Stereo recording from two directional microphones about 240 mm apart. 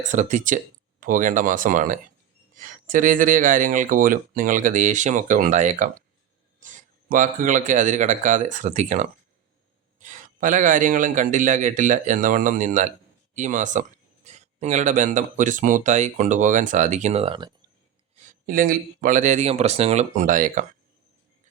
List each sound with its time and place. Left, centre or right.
0.0 s speech: right
18.3 s speech: right